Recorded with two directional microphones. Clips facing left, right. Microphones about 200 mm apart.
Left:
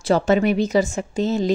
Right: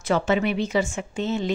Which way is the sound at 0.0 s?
40° left (ahead or behind).